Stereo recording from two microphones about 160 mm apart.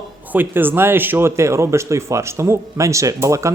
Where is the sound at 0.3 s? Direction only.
10° right (ahead or behind).